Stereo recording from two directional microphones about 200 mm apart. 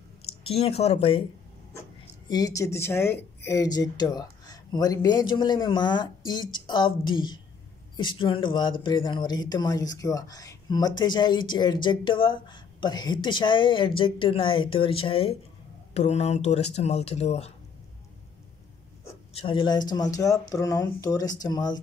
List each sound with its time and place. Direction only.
0.2 s speech: 30° left (ahead or behind)
2.2 s speech: 20° left (ahead or behind)
19.3 s speech: 25° left (ahead or behind)